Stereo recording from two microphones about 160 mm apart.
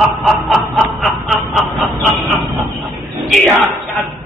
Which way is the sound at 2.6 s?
Centre (ahead or behind).